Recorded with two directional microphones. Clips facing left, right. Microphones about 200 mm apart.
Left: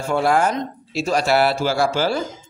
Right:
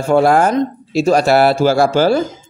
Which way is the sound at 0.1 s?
50° right (ahead or behind).